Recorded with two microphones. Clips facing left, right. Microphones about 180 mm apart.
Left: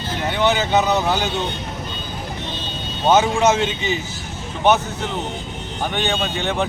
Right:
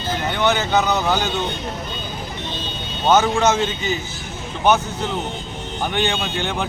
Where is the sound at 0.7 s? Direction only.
25° left (ahead or behind).